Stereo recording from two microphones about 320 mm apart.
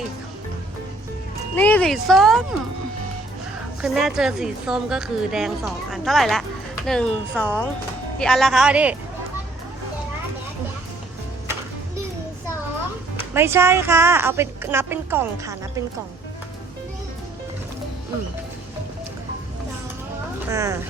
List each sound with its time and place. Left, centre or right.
1.5 s a woman's voice: centre
3.8 s a woman's voice: centre
13.3 s a woman's voice: centre
20.5 s a woman's voice: centre